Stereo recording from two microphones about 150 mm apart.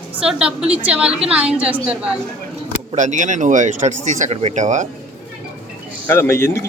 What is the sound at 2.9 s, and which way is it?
Speech, 55° right (ahead or behind).